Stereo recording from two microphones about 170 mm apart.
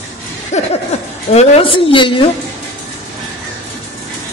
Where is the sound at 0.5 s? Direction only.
45° left (ahead or behind).